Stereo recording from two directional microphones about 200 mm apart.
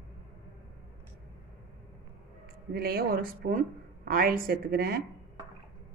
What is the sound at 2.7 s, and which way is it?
A woman's voice, 50° right (ahead or behind).